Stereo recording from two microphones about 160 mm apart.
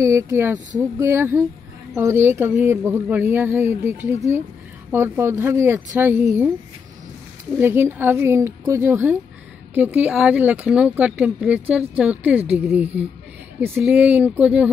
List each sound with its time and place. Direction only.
0.0 s speech: 20° right (ahead or behind)
7.5 s speech: 15° right (ahead or behind)